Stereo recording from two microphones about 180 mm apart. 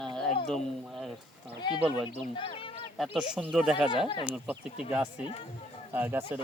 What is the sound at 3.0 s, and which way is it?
Speech, 5° right (ahead or behind).